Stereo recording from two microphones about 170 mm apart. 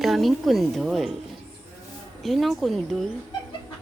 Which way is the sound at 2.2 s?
Centre (ahead or behind).